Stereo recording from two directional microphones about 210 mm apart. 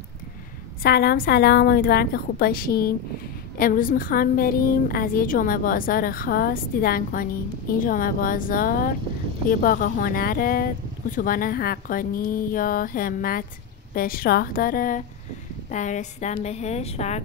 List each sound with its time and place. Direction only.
0.8 s a woman's voice: 50° left (ahead or behind); by 17.2 s 30° left (ahead or behind)